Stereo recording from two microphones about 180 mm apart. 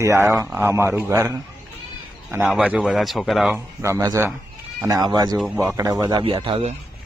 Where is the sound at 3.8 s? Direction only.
15° right (ahead or behind).